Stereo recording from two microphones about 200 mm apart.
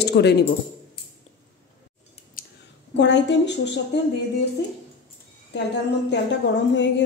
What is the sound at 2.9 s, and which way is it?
Speech, 60° left (ahead or behind).